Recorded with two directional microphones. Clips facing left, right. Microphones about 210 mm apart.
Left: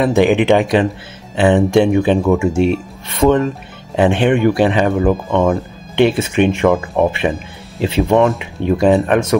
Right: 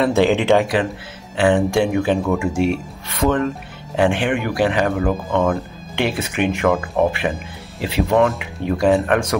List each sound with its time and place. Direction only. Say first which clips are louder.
0.0 s speech: left 3 dB; 15° left (ahead or behind)